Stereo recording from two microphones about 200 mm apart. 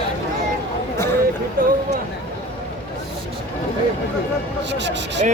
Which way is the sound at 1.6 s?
45° right (ahead or behind).